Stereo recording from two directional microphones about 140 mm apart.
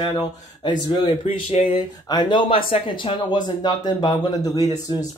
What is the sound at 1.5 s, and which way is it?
Speech, 45° left (ahead or behind).